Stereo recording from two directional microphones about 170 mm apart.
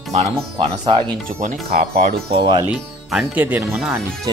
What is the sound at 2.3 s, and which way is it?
Speech, 25° right (ahead or behind).